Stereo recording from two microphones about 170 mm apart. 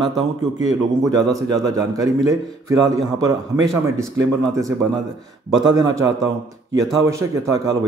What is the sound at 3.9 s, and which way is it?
A man's voice, 20° right (ahead or behind).